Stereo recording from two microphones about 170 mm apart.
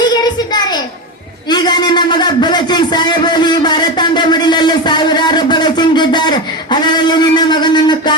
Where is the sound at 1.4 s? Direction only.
25° left (ahead or behind).